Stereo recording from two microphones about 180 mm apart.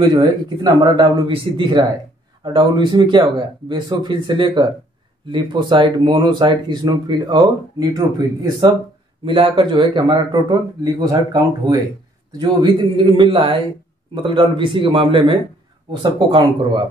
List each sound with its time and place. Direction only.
0.1 s speech: 25° right (ahead or behind)